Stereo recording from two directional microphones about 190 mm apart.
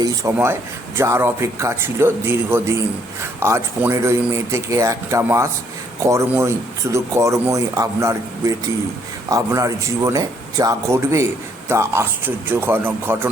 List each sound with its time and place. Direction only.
0.0 s speech: 15° right (ahead or behind)